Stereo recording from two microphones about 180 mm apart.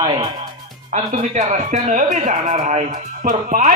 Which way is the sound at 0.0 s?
25° right (ahead or behind).